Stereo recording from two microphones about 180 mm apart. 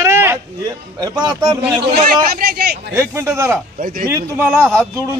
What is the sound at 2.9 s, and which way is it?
Speech, 15° right (ahead or behind).